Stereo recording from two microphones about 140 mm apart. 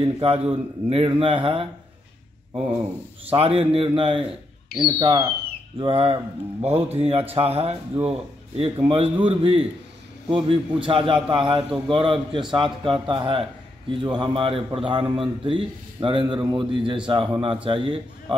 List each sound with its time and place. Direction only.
0.0 s a man's voice: 45° right (ahead or behind)
2.5 s speech: 10° right (ahead or behind)
3.3 s a man's voice: 45° right (ahead or behind); by 5.3 s 25° right (ahead or behind)
5.8 s a man's voice: 45° right (ahead or behind)